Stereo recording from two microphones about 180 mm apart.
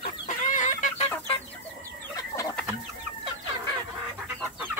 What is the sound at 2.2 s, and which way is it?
Chicken, 20° left (ahead or behind).